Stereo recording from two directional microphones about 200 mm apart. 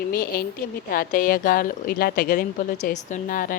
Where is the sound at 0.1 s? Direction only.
45° left (ahead or behind).